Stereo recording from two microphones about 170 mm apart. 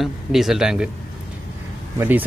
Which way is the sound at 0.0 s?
Centre (ahead or behind).